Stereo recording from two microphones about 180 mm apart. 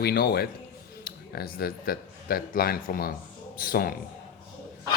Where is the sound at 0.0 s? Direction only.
60° left (ahead or behind).